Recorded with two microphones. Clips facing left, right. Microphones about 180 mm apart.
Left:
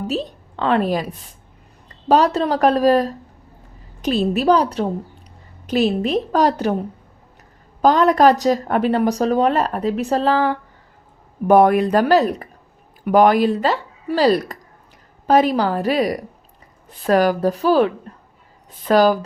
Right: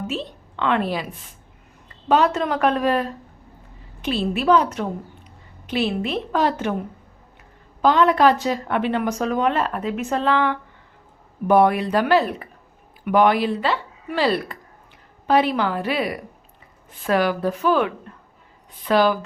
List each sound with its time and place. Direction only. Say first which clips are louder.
0.1 s a woman's voice: left 5 dB; 40° left (ahead or behind)
7.8 s a woman's voice: left 3 dB; 40° left (ahead or behind)
11.4 s a woman's voice: left 4 dB; 45° left (ahead or behind)